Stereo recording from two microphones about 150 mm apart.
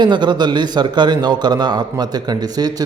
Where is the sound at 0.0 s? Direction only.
30° right (ahead or behind).